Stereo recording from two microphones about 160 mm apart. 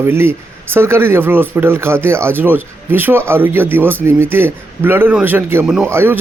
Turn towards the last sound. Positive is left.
turn(degrees=-15)  # may be behind; listen again after turning